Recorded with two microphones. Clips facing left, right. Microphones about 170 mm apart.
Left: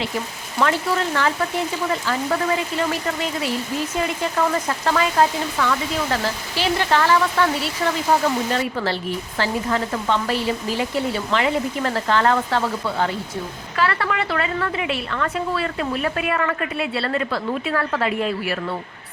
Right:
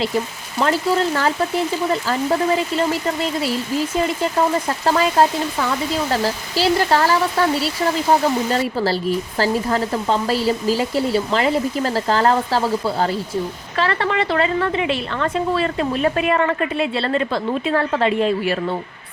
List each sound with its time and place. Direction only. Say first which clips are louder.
0.6 s a woman's voice: right 3 dB; 30° right (ahead or behind)
4.0 s a woman's voice: right 1 dB; 30° right (ahead or behind)